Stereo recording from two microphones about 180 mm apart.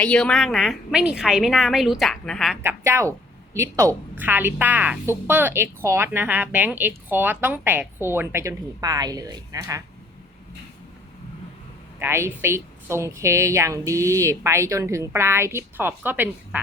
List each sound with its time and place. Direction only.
0.0 s a woman's voice: 5° left (ahead or behind)
2.6 s a woman's voice: 15° right (ahead or behind)
11.9 s a woman's voice: 15° right (ahead or behind)